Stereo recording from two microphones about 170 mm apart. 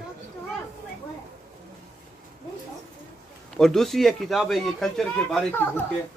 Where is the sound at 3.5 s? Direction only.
Centre (ahead or behind).